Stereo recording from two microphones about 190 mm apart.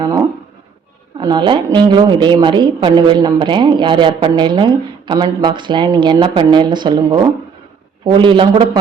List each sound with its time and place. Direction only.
1.2 s a woman's voice: 25° right (ahead or behind)